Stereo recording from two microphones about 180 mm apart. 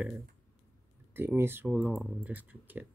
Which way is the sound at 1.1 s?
10° right (ahead or behind).